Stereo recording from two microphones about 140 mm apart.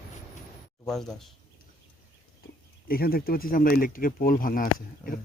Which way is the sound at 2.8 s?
90° left.